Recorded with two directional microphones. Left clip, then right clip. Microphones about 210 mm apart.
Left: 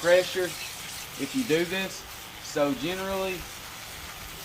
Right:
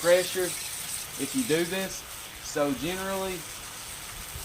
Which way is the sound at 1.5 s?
20° right (ahead or behind).